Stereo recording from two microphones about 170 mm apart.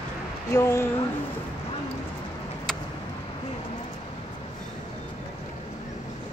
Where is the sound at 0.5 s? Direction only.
15° left (ahead or behind).